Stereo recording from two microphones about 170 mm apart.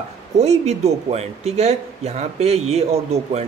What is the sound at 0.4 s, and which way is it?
Speech, 40° right (ahead or behind).